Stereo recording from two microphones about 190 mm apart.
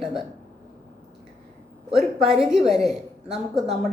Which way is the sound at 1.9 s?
Centre (ahead or behind).